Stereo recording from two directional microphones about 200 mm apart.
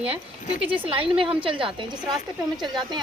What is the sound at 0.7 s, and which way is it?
A woman's voice, 25° right (ahead or behind).